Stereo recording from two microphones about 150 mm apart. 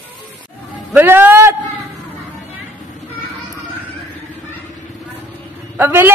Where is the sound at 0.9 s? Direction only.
15° right (ahead or behind).